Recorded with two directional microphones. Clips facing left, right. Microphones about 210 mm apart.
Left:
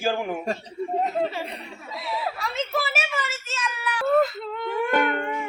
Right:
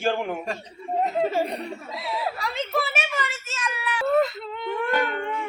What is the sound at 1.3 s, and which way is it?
Chuckle, 40° right (ahead or behind).